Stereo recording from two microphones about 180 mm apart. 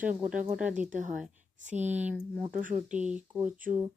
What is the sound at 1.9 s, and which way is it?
Speech, 10° right (ahead or behind).